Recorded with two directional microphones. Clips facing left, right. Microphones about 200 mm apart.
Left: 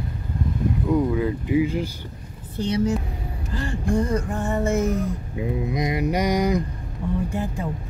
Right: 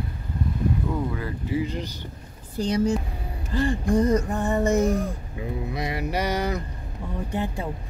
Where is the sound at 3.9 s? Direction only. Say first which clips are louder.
Right 2 dB; 20° right (ahead or behind).